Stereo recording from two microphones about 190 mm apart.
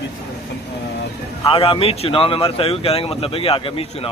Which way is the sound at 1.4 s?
30° left (ahead or behind).